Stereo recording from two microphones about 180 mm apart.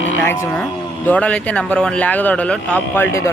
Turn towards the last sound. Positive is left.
turn(degrees=15)  # may be behind; listen again after turning